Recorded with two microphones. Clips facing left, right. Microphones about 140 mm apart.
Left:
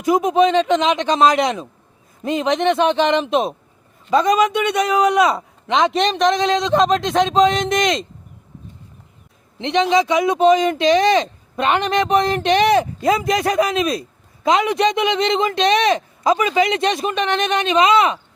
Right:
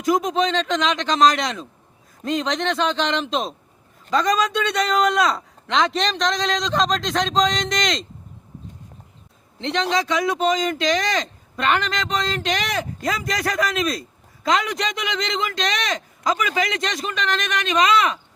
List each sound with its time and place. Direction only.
0.2 s a man's voice: 10° left (ahead or behind)
9.6 s speech: 20° left (ahead or behind)